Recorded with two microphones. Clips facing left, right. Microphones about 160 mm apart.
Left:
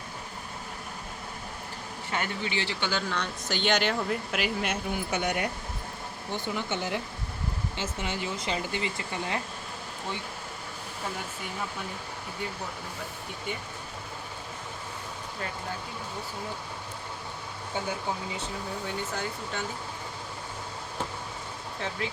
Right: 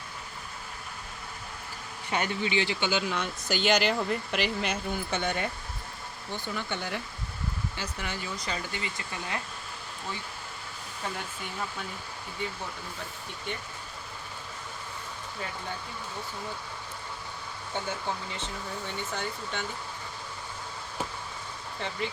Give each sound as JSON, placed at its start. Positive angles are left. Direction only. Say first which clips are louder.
{"t": 2.0, "sound": "speech", "louder": "right 3 dB", "side_deg": -20}
{"t": 3.5, "sound": "speech", "louder": "right 1 dB", "side_deg": 0}
{"t": 17.7, "sound": "speech", "louder": "left 1 dB", "side_deg": 10}
{"t": 21.8, "sound": "speech", "louder": "even", "side_deg": 0}